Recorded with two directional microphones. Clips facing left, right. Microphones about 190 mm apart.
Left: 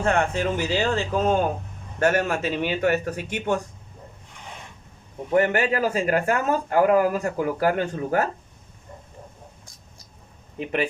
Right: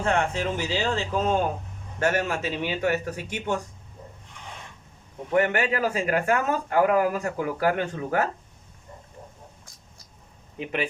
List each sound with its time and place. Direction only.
0.0 s a man's voice: 50° left (ahead or behind)
5.3 s speech: 40° left (ahead or behind)
10.6 s a man's voice: 45° left (ahead or behind)